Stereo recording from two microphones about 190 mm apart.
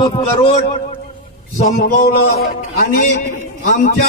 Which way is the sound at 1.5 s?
40° left (ahead or behind).